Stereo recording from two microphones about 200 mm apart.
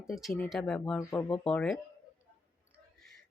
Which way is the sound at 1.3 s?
5° left (ahead or behind).